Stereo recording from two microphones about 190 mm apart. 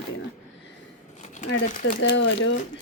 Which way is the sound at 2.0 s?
70° left (ahead or behind).